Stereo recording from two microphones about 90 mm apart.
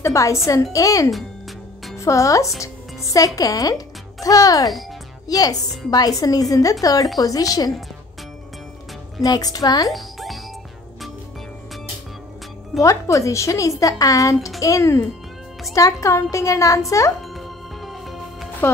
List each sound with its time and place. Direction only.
0.0 s a woman's voice: 35° left (ahead or behind)
2.6 s music: 40° left (ahead or behind)
3.3 s a child's voice: 40° left (ahead or behind)
9.2 s a woman's voice: 45° left (ahead or behind)
9.8 s music: centre (ahead or behind)
12.8 s speech: 35° left (ahead or behind)
17.2 s chopping: centre (ahead or behind)